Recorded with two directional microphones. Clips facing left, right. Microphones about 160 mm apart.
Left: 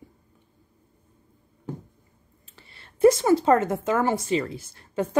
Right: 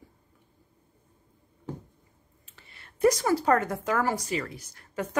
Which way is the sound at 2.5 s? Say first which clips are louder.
Left 3 dB; 30° left (ahead or behind).